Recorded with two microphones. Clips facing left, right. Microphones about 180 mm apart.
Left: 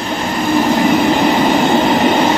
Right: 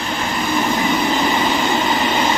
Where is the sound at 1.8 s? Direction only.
45° left (ahead or behind).